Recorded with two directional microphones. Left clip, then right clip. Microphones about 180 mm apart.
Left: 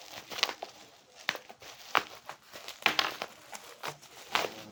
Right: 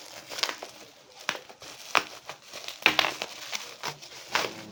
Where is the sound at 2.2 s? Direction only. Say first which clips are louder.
Right 5 dB; centre (ahead or behind).